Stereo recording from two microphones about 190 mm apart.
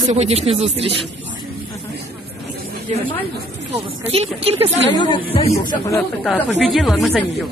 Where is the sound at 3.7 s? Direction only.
35° right (ahead or behind).